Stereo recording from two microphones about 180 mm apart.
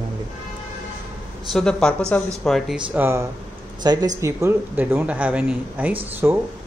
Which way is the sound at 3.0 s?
15° right (ahead or behind).